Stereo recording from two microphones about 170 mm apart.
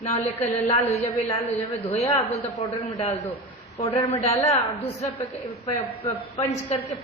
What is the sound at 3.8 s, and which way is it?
Speech, 35° left (ahead or behind).